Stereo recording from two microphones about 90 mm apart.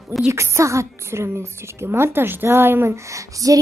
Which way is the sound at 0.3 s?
30° right (ahead or behind).